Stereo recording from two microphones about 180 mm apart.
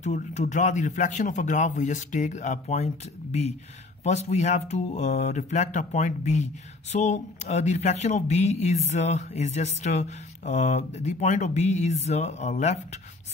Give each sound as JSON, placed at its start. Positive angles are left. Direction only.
{"t": 0.0, "sound": "speech", "side_deg": 40}